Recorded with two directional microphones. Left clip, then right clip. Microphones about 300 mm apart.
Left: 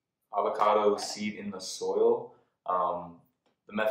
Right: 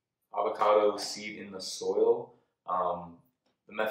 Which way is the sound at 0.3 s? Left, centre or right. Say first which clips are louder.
Even; centre.